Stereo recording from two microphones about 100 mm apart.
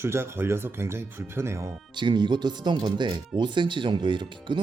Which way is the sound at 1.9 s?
50° right (ahead or behind).